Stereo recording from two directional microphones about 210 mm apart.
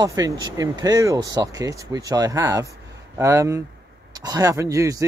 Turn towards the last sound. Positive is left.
turn(degrees=-15)  # may be behind; listen again after turning